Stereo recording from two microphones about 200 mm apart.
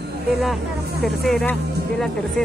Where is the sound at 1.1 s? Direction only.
5° left (ahead or behind).